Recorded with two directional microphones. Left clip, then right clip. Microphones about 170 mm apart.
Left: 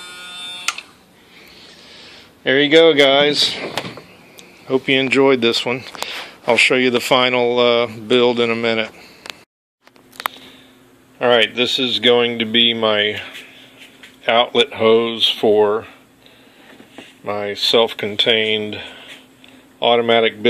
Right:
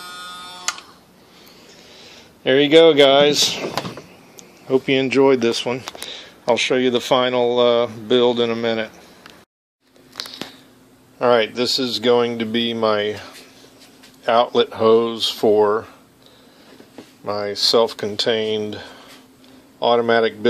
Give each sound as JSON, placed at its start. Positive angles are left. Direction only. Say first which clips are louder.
{"t": 1.7, "sound": "speech", "louder": "left 1 dB", "side_deg": -10}
{"t": 11.1, "sound": "speech", "louder": "left 2 dB", "side_deg": -5}
{"t": 17.2, "sound": "speech", "louder": "even", "side_deg": -5}